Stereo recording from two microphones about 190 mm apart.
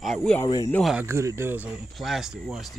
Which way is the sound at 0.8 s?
Centre (ahead or behind).